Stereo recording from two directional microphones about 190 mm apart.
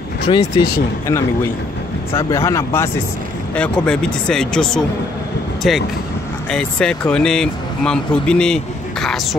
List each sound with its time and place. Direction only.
0.3 s speech: 25° left (ahead or behind)
1.0 s speech: 15° left (ahead or behind)